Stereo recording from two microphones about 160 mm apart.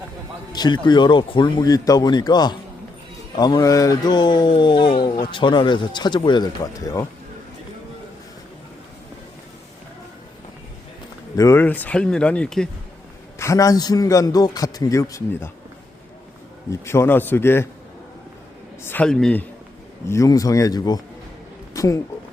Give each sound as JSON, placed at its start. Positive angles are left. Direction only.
{"t": 0.5, "sound": "speech", "side_deg": 25}
{"t": 11.3, "sound": "speech", "side_deg": 15}
{"t": 13.4, "sound": "speech", "side_deg": 20}
{"t": 16.8, "sound": "speech", "side_deg": 15}
{"t": 18.9, "sound": "speech", "side_deg": 5}
{"t": 20.1, "sound": "speech", "side_deg": 20}